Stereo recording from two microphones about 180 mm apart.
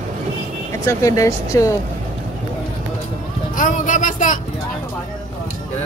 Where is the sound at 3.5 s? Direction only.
45° left (ahead or behind).